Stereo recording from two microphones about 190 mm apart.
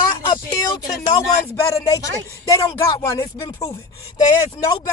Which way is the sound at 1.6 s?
15° left (ahead or behind).